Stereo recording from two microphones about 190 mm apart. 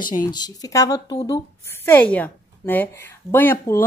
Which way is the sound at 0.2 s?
20° left (ahead or behind).